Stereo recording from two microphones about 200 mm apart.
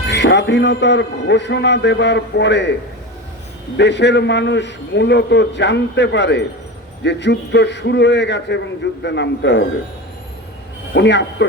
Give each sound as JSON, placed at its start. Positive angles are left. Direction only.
{"t": 0.1, "sound": "a man's voice", "side_deg": 60}
{"t": 3.8, "sound": "a man's voice", "side_deg": 60}
{"t": 10.9, "sound": "a man's voice", "side_deg": 60}